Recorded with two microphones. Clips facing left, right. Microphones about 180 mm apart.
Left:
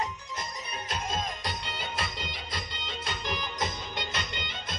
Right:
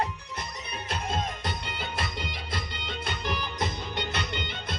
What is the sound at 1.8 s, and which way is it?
Music, 55° right (ahead or behind).